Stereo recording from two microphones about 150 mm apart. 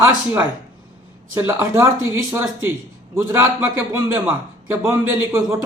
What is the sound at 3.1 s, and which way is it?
A man's voice, 15° right (ahead or behind).